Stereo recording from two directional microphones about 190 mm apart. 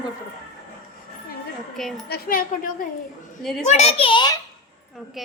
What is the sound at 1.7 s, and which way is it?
Speech, centre (ahead or behind).